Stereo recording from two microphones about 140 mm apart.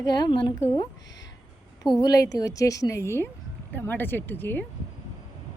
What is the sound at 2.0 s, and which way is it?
A woman's voice, 25° left (ahead or behind).